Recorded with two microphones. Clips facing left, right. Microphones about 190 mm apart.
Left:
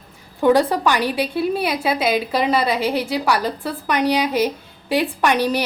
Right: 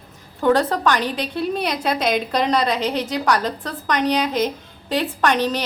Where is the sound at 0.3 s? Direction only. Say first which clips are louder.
Left 2 dB; 10° left (ahead or behind).